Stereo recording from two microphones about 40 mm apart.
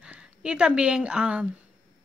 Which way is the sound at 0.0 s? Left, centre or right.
Right.